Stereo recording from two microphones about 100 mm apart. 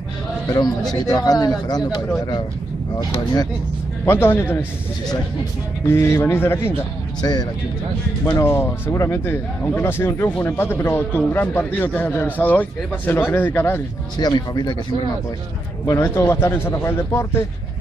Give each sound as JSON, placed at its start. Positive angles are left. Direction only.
{"t": 1.0, "sound": "speech", "side_deg": 40}
{"t": 4.0, "sound": "speech", "side_deg": 25}
{"t": 5.9, "sound": "speech", "side_deg": 25}
{"t": 7.2, "sound": "speech", "side_deg": 45}
{"t": 8.3, "sound": "speech", "side_deg": 25}
{"t": 14.1, "sound": "speech", "side_deg": 45}
{"t": 15.8, "sound": "speech", "side_deg": 25}